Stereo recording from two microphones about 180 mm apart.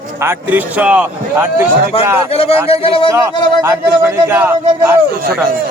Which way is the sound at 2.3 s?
35° left (ahead or behind).